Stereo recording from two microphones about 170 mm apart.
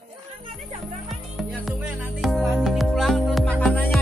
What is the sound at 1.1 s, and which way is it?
Music, centre (ahead or behind).